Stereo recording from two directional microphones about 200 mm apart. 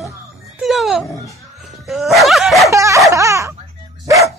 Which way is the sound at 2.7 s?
15° right (ahead or behind).